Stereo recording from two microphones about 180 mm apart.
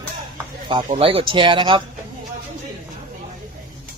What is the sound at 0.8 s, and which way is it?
Speech, 35° right (ahead or behind).